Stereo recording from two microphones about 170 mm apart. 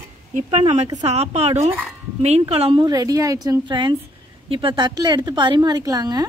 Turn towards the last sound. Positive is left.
turn(degrees=-25)  # may be behind; listen again after turning